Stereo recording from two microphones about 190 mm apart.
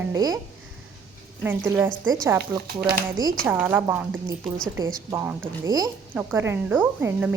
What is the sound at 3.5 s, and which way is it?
Speech, 10° right (ahead or behind).